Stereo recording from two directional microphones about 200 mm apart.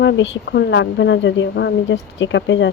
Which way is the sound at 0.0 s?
60° left (ahead or behind).